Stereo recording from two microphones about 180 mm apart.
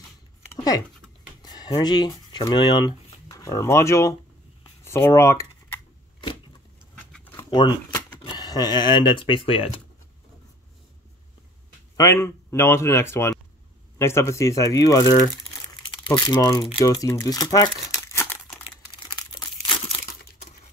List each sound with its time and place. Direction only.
0.5 s a sound: 20° left (ahead or behind)
1.4 s speech: 20° left (ahead or behind)
4.8 s a sound: 15° left (ahead or behind)
7.1 s a sound: 5° left (ahead or behind)
7.3 s speech: 20° left (ahead or behind)
12.0 s speech: 15° left (ahead or behind)
15.2 s crumpling: 25° left (ahead or behind)
16.8 s speech: 20° left (ahead or behind)
17.8 s crumpling: 15° left (ahead or behind)